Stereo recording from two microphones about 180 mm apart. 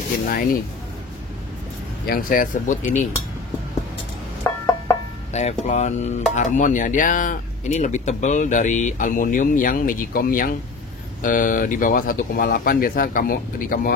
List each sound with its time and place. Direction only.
0.3 s speech: 55° left (ahead or behind)
2.0 s speech: 55° left (ahead or behind)
5.3 s speech: 40° left (ahead or behind); by 13.9 s 55° left (ahead or behind)